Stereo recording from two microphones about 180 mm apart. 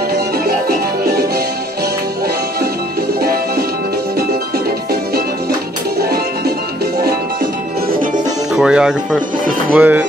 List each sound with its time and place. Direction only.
3.2 s music: 60° right (ahead or behind)
8.5 s speech: 5° right (ahead or behind)